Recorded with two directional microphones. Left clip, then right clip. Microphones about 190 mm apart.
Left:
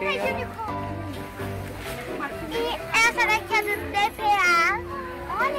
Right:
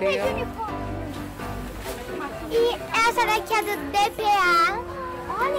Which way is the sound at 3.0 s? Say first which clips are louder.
Left 1 dB; 50° right (ahead or behind).